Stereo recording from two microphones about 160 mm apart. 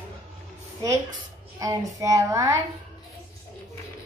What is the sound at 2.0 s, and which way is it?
Speech, 20° right (ahead or behind).